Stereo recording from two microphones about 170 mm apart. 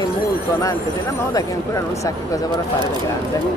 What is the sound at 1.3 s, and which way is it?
Speech, 20° left (ahead or behind).